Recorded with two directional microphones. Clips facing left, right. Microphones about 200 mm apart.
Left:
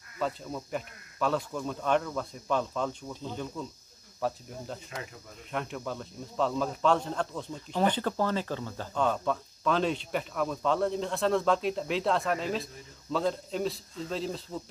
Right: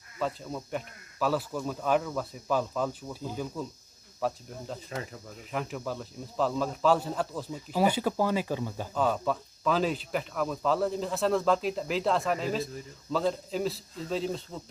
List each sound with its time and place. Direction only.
0.2 s speech: centre (ahead or behind)
4.9 s speech: 35° right (ahead or behind)
5.5 s speech: centre (ahead or behind)